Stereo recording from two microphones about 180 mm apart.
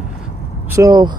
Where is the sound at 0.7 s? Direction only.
20° right (ahead or behind).